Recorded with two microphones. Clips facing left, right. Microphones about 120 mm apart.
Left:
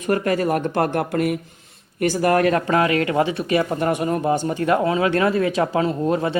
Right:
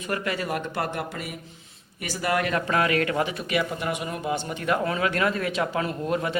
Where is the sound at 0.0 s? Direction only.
40° left (ahead or behind).